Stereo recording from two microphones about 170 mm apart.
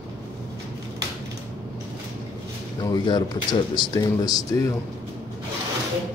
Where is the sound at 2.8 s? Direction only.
25° left (ahead or behind).